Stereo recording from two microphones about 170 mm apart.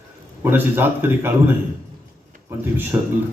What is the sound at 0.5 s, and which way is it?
Speech, 10° right (ahead or behind).